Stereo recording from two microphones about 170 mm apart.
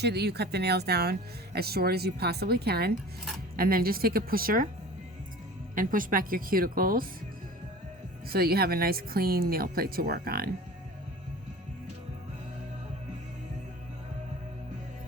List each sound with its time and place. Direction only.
0.0 s speech: 75° right (ahead or behind); by 4.7 s 55° right (ahead or behind)
5.7 s speech: 55° right (ahead or behind)
8.3 s speech: 65° right (ahead or behind)